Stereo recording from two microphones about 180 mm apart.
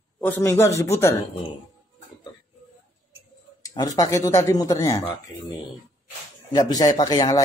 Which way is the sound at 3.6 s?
20° left (ahead or behind).